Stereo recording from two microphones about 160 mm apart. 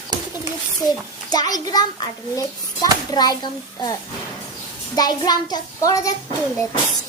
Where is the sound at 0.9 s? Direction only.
25° left (ahead or behind).